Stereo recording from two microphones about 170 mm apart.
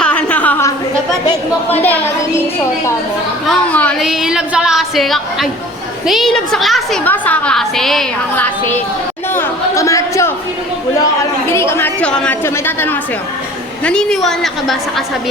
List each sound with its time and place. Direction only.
0.0 s a sound: 5° left (ahead or behind)
1.7 s a woman's voice: 10° left (ahead or behind)
3.4 s a woman's voice: 5° left (ahead or behind)
4.0 s a woman's voice: 5° right (ahead or behind)
9.3 s chatter: 15° left (ahead or behind)
11.5 s a woman's voice: 15° left (ahead or behind)